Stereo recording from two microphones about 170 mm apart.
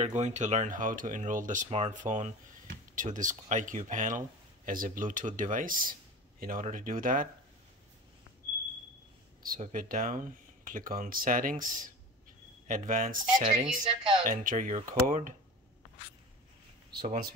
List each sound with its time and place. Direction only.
0.0 s speech: 45° right (ahead or behind)
9.4 s speech: 50° right (ahead or behind)
16.9 s speech: 65° right (ahead or behind)